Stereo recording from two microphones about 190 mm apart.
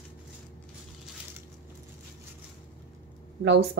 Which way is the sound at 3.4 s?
65° right (ahead or behind).